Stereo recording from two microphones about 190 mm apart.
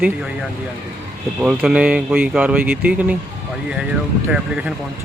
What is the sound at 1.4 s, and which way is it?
Speech, 5° right (ahead or behind).